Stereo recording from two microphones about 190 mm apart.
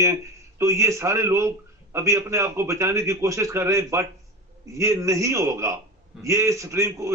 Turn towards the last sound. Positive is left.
turn(degrees=-15)  # may be behind; listen again after turning